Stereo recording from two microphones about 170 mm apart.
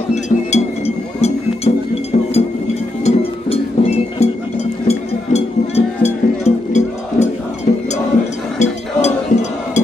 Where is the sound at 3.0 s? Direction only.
35° left (ahead or behind).